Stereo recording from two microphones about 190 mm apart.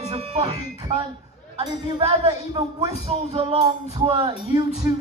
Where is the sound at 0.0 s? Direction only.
30° right (ahead or behind).